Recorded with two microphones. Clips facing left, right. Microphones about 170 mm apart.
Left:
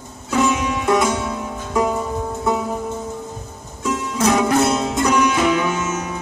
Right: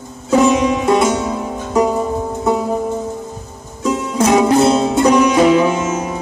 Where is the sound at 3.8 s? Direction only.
30° right (ahead or behind).